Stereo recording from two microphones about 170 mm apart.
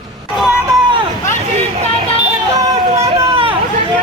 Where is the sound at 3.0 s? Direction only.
35° right (ahead or behind).